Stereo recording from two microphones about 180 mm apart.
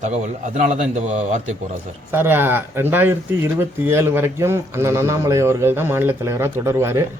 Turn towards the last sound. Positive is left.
turn(degrees=-15)  # may be behind; listen again after turning